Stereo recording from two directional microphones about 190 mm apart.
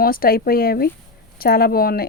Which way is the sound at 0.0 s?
50° left (ahead or behind).